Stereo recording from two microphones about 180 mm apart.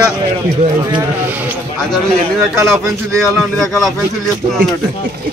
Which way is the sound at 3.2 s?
Centre (ahead or behind).